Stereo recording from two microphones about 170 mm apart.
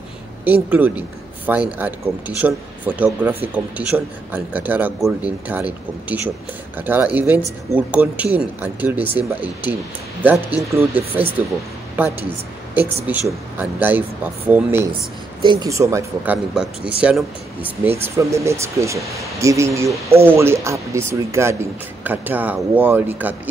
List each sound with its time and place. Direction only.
0.5 s speech: 10° right (ahead or behind)
15.4 s speech: 30° right (ahead or behind)
15.7 s speech: 15° right (ahead or behind)
17.0 s speech: 5° right (ahead or behind)